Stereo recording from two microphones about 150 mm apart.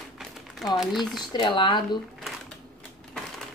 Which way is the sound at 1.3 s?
30° left (ahead or behind).